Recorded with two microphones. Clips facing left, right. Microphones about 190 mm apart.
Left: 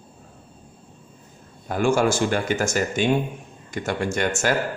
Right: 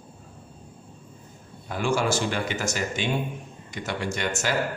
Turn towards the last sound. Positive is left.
turn(degrees=50)  # may be behind; listen again after turning